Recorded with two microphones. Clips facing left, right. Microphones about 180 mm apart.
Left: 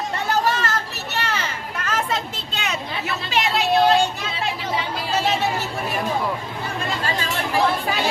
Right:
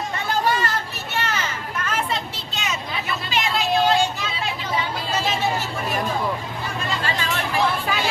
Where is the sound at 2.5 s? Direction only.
65° left (ahead or behind).